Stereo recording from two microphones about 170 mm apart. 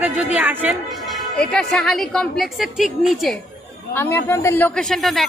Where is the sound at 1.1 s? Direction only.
5° left (ahead or behind).